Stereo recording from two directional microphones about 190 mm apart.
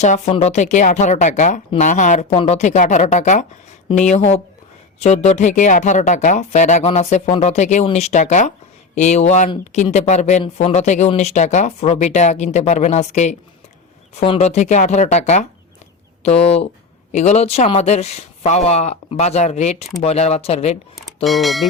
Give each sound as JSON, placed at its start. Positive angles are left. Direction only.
{"t": 0.0, "sound": "speech", "side_deg": 35}
{"t": 21.2, "sound": "speech", "side_deg": 0}